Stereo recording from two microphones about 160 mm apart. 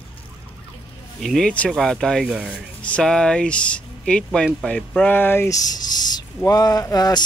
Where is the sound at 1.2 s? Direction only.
Centre (ahead or behind).